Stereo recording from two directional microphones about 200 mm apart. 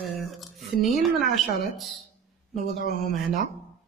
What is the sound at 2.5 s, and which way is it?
Speech, 50° right (ahead or behind).